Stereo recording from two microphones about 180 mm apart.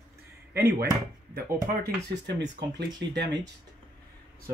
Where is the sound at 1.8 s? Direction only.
65° right (ahead or behind).